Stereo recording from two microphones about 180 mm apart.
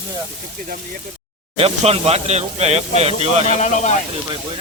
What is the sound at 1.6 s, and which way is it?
Speech, 30° right (ahead or behind).